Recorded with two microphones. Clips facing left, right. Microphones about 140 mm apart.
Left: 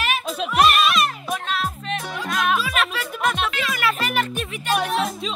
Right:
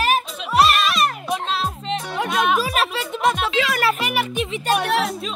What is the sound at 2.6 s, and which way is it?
Music, 35° right (ahead or behind).